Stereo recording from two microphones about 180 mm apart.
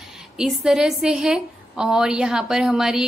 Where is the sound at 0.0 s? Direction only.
Centre (ahead or behind).